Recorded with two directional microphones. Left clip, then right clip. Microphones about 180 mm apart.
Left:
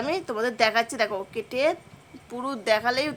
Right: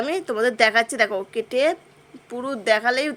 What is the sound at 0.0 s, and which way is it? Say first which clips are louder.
Speech: right 5 dB; 15° right (ahead or behind).